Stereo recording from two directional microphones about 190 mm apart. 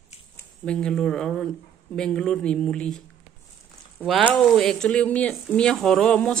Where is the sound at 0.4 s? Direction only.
5° left (ahead or behind).